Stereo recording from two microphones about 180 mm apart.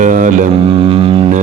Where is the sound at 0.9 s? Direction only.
30° right (ahead or behind).